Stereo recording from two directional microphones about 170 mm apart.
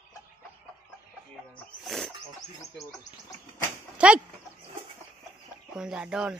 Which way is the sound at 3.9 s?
5° right (ahead or behind).